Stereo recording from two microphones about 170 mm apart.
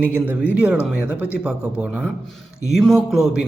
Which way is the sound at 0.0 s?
10° right (ahead or behind).